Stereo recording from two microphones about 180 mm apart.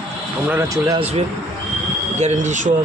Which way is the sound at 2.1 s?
40° right (ahead or behind).